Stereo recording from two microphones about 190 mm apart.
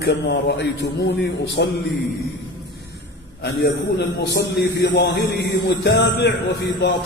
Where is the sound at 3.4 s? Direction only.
60° left (ahead or behind).